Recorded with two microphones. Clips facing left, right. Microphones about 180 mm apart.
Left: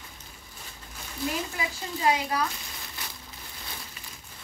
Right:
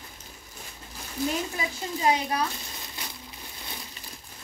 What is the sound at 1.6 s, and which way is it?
Speech, 20° right (ahead or behind).